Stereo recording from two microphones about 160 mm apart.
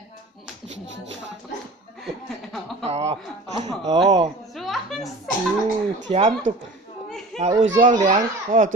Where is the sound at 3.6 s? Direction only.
25° right (ahead or behind).